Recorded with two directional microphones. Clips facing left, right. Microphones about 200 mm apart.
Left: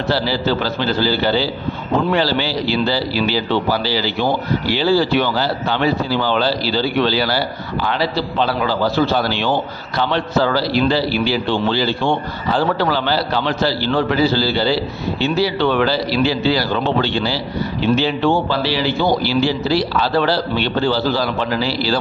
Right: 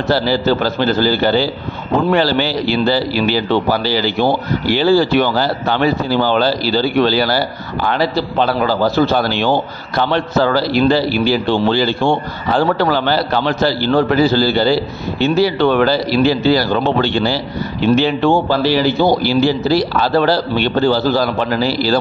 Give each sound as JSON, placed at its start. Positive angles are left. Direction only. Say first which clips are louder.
{"t": 0.1, "sound": "a man's voice", "louder": "right 5 dB", "side_deg": -50}